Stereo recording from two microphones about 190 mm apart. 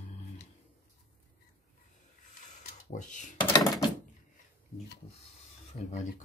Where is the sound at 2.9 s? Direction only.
40° left (ahead or behind).